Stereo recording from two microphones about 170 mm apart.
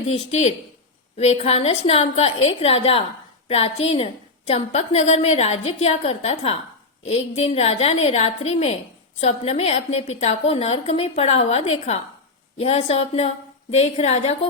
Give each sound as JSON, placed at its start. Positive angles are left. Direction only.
{"t": 0.1, "sound": "a woman's voice", "side_deg": 40}